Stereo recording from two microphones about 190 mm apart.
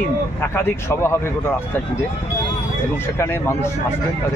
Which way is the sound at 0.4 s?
10° left (ahead or behind).